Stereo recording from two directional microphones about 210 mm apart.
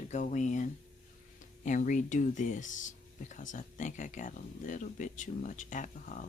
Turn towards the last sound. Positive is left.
turn(degrees=35)  # may be behind; listen again after turning